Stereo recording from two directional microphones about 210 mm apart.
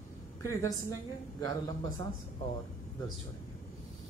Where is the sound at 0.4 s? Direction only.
15° left (ahead or behind).